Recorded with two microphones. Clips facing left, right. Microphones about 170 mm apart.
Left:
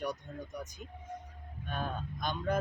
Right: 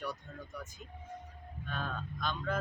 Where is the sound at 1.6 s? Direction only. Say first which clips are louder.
Left 2 dB; 15° left (ahead or behind).